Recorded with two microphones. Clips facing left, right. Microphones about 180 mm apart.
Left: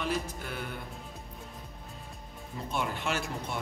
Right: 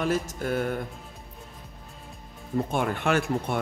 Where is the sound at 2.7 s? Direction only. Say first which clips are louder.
Right 6 dB; 55° right (ahead or behind).